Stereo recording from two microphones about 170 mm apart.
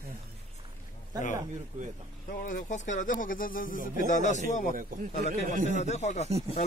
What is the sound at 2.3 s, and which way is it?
Speech, 55° left (ahead or behind).